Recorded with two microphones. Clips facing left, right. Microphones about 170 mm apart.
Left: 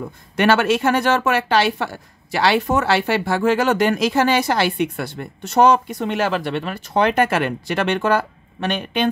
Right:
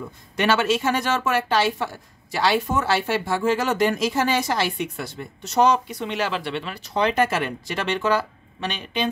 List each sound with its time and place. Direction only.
0.4 s speech: 60° left (ahead or behind)